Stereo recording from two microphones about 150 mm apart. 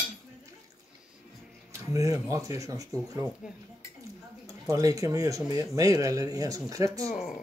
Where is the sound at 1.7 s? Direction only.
20° right (ahead or behind).